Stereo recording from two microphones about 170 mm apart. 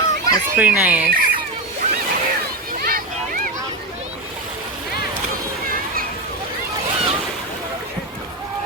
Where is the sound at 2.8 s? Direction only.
55° right (ahead or behind).